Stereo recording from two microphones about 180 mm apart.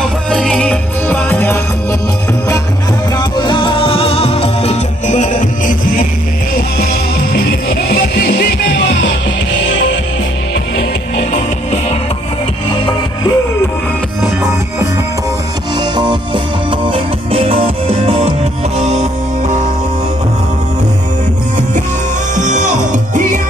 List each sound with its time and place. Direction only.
0.3 s music: 5° left (ahead or behind)
3.2 s music: 25° left (ahead or behind); by 9.1 s 80° left
9.7 s music: 90° left
12.6 s music: 30° left (ahead or behind)
15.8 s music: 25° right (ahead or behind)
18.8 s music: 35° right (ahead or behind)
22.3 s music: 45° right (ahead or behind)